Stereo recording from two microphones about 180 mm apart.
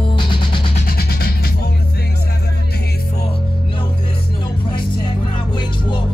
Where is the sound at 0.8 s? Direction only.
60° left (ahead or behind).